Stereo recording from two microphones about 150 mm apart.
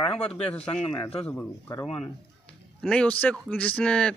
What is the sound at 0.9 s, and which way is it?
Speech, 30° left (ahead or behind).